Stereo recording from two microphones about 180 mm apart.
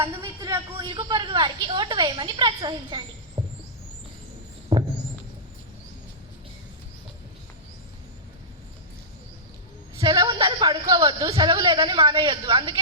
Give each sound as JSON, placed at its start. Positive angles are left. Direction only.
{"t": 0.0, "sound": "a woman's voice", "side_deg": -25}
{"t": 3.4, "sound": "rodents", "side_deg": -25}
{"t": 4.7, "sound": "rodents", "side_deg": -25}
{"t": 10.0, "sound": "a man's voice", "side_deg": -25}